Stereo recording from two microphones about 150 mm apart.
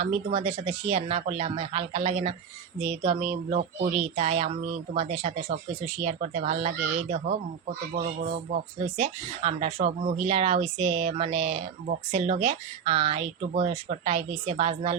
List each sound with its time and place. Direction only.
0.0 s speech: 40° right (ahead or behind)
7.9 s speech: 70° right (ahead or behind)
9.0 s speech: 45° right (ahead or behind)